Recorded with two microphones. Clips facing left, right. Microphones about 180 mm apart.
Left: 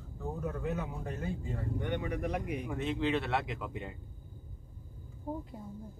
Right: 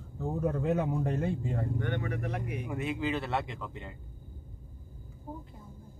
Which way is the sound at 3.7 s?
15° left (ahead or behind).